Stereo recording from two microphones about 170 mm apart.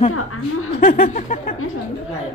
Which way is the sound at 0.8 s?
55° left (ahead or behind).